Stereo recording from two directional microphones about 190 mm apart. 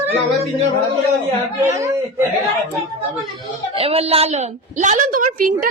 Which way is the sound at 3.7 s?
30° right (ahead or behind).